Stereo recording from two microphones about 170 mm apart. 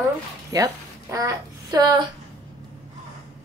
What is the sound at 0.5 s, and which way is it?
A woman's voice, 20° right (ahead or behind).